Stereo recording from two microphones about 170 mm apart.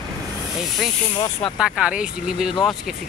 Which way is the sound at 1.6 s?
5° right (ahead or behind).